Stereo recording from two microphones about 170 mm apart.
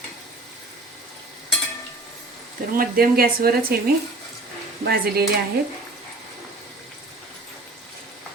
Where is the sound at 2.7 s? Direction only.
60° right (ahead or behind).